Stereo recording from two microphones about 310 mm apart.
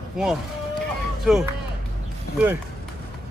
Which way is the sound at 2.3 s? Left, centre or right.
Centre.